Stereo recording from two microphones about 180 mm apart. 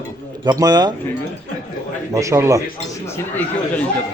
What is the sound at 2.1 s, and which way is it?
Speech, 15° right (ahead or behind).